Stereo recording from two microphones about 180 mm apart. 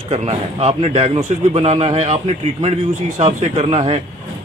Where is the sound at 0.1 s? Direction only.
35° right (ahead or behind).